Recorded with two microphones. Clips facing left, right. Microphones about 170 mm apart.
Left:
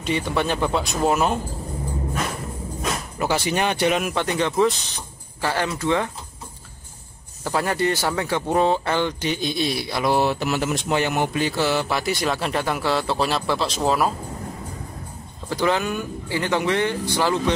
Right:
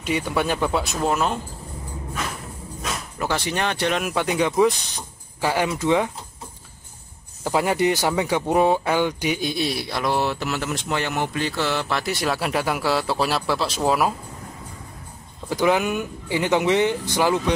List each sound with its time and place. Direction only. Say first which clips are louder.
0.0 s speech: even; 10° right (ahead or behind)
1.0 s speech: left 3 dB; 10° left (ahead or behind)
3.2 s speech: left 2 dB; 10° left (ahead or behind); by 6.1 s 15° right (ahead or behind)
7.4 s speech: right 2 dB; 15° right (ahead or behind)
15.5 s speech: right 2 dB; 15° right (ahead or behind)